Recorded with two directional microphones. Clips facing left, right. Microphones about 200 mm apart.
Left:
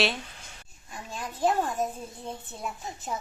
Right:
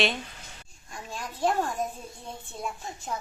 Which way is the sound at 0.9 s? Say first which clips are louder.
Even; 5° left (ahead or behind).